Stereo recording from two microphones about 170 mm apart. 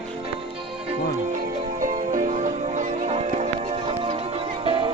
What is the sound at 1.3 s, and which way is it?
Music, 50° right (ahead or behind).